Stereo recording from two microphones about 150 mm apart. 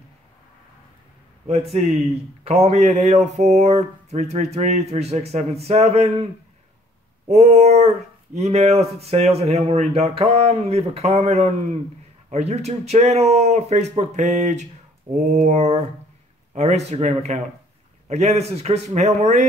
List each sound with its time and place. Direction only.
1.5 s speech: 45° right (ahead or behind)
7.2 s speech: 50° right (ahead or behind)
15.1 s a sound: 55° right (ahead or behind)
16.5 s speech: 50° right (ahead or behind)